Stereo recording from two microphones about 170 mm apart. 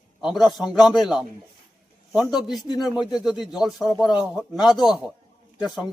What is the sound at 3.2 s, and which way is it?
Speech, 5° right (ahead or behind).